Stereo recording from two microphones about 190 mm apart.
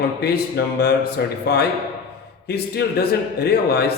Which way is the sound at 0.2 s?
55° left (ahead or behind).